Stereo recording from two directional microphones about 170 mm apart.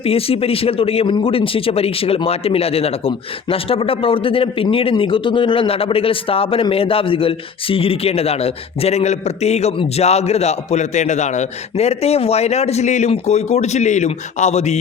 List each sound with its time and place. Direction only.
0.0 s speech: 35° left (ahead or behind)